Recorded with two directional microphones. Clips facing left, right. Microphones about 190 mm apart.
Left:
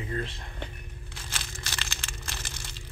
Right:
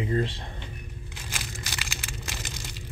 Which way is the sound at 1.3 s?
10° right (ahead or behind).